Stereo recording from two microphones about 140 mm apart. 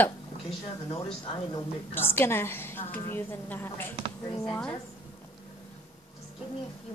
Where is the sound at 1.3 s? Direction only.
35° left (ahead or behind).